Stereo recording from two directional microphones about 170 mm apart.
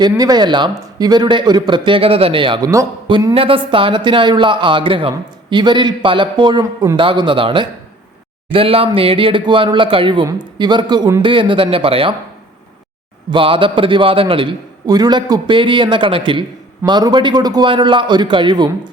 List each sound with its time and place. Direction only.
0.2 s a man's voice: 25° right (ahead or behind)
13.3 s a man's voice: 30° right (ahead or behind)